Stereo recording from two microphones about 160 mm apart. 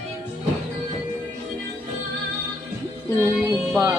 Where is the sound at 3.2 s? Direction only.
15° right (ahead or behind).